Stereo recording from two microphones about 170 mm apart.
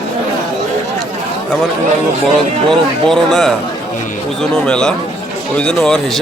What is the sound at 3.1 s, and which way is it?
Speech, centre (ahead or behind).